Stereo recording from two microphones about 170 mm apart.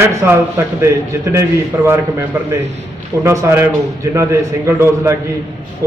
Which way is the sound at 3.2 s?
15° right (ahead or behind).